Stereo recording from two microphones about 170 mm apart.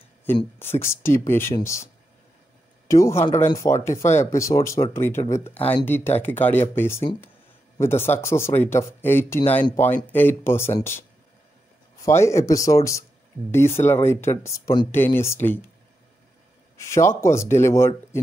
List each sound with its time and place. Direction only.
0.6 s speech: 15° left (ahead or behind)
2.9 s speech: 15° left (ahead or behind)
5.6 s speech: 35° left (ahead or behind)
5.9 s speech: 10° left (ahead or behind)
16.7 s speech: 15° left (ahead or behind)